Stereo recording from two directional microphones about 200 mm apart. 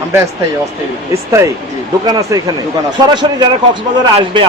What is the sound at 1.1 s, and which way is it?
A man's voice, 15° right (ahead or behind).